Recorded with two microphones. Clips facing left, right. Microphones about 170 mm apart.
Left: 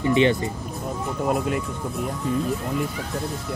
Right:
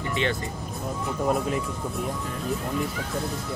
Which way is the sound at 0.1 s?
20° left (ahead or behind).